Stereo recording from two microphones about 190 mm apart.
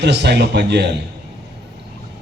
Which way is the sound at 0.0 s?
60° right (ahead or behind).